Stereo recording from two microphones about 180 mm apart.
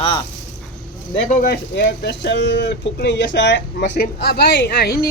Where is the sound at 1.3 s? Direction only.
55° left (ahead or behind).